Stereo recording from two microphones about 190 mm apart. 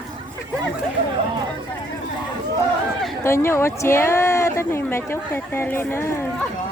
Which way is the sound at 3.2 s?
15° left (ahead or behind).